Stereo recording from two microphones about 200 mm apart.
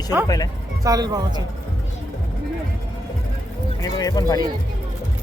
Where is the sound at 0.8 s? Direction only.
20° right (ahead or behind).